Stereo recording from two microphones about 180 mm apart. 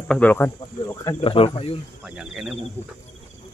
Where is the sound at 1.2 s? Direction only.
30° left (ahead or behind).